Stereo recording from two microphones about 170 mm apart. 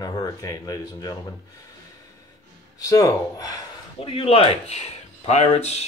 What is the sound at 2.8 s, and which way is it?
Speech, 20° left (ahead or behind).